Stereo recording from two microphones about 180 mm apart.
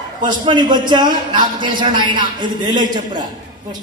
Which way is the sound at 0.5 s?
25° right (ahead or behind).